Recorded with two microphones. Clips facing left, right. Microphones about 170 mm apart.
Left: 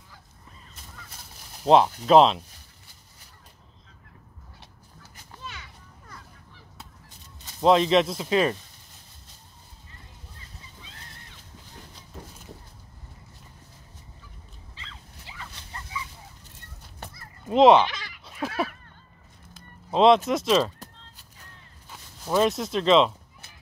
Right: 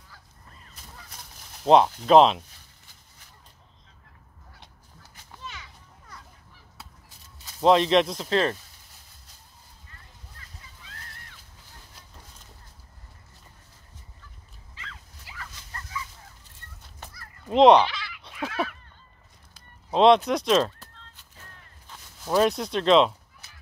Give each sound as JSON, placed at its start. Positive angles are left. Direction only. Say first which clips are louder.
{"t": 1.6, "sound": "speech", "louder": "even", "side_deg": 0}
{"t": 7.4, "sound": "speech", "louder": "even", "side_deg": 0}
{"t": 10.8, "sound": "slosh", "louder": "right 1 dB", "side_deg": 20}
{"t": 15.2, "sound": "dog", "louder": "even", "side_deg": 20}
{"t": 17.5, "sound": "speech", "louder": "even", "side_deg": 0}
{"t": 17.8, "sound": "sheep", "louder": "right 1 dB", "side_deg": 45}
{"t": 19.9, "sound": "speech", "louder": "even", "side_deg": 0}
{"t": 21.8, "sound": "speech", "louder": "even", "side_deg": 0}